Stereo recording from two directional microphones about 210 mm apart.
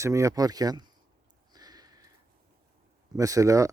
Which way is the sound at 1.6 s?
20° right (ahead or behind).